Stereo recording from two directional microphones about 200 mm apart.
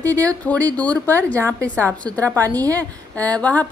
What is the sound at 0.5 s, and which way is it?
A woman's voice, 5° left (ahead or behind).